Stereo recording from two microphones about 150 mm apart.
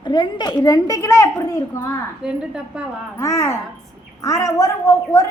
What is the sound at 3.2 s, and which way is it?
A woman's voice, 20° left (ahead or behind).